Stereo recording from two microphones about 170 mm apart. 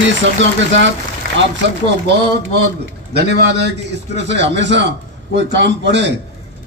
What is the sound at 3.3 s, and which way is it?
A man's voice, 80° right.